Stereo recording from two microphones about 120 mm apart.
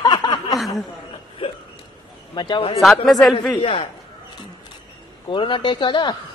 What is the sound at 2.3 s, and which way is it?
Speech, 40° left (ahead or behind).